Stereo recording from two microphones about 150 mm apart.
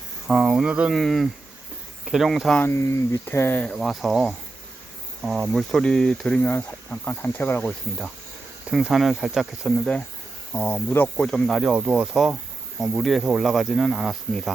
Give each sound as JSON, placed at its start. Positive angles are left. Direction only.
{"t": 0.3, "sound": "speech", "side_deg": -5}
{"t": 2.6, "sound": "speech", "side_deg": 20}
{"t": 8.7, "sound": "speech", "side_deg": 0}